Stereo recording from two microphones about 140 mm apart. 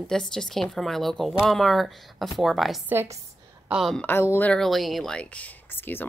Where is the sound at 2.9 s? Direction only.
15° right (ahead or behind).